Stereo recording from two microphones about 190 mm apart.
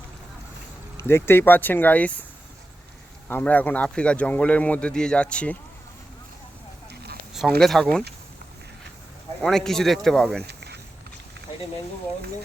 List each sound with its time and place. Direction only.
0.9 s speech: 15° left (ahead or behind)
3.2 s speech: 10° left (ahead or behind)
7.6 s speech: centre (ahead or behind)
9.4 s speech: centre (ahead or behind)
10.4 s a sound: 60° right (ahead or behind)